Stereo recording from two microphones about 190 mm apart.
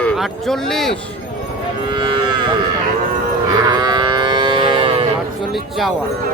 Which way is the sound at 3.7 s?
20° right (ahead or behind).